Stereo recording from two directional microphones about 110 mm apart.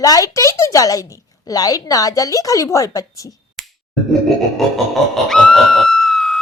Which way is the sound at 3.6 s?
Centre (ahead or behind).